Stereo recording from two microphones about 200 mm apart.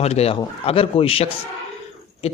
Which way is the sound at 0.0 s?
30° left (ahead or behind).